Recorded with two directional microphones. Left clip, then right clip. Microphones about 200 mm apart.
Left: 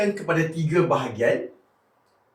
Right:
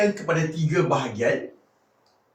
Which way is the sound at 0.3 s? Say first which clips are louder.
Left 1 dB; 20° right (ahead or behind).